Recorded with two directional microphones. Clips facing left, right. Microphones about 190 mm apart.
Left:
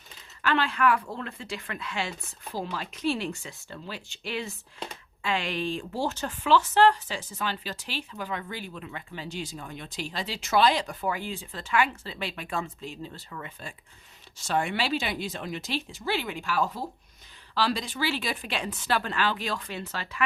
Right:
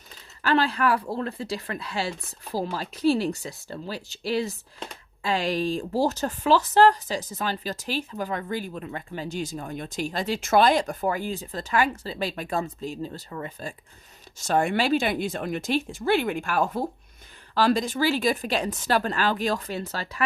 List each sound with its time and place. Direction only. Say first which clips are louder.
0.4 s speech: right 2 dB; 35° right (ahead or behind)